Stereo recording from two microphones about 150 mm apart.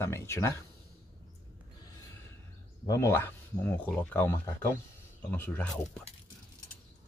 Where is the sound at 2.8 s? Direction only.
20° left (ahead or behind).